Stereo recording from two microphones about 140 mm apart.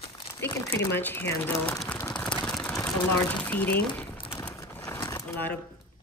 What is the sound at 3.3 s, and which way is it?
Speech, 10° left (ahead or behind).